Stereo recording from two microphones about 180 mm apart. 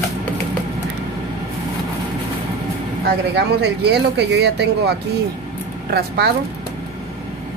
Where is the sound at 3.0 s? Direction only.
70° right (ahead or behind).